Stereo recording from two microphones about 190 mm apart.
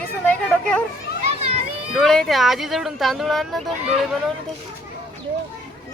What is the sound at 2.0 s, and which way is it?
Speech, centre (ahead or behind).